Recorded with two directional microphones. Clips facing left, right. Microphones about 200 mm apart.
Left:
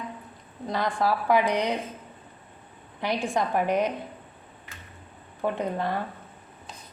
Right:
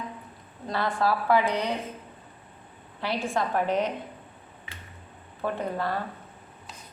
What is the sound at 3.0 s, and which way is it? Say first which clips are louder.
Speech: left 1 dB; 15° left (ahead or behind).